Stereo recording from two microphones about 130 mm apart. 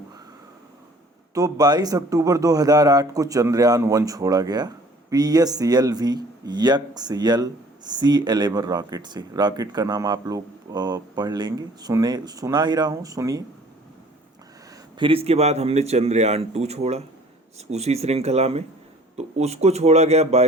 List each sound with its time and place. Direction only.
1.3 s speech: 25° right (ahead or behind)
14.9 s speech: 45° right (ahead or behind)